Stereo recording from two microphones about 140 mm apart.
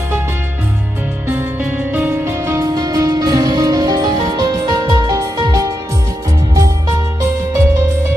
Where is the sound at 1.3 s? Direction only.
10° right (ahead or behind).